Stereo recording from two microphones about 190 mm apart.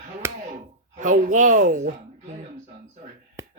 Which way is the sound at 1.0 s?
45° right (ahead or behind).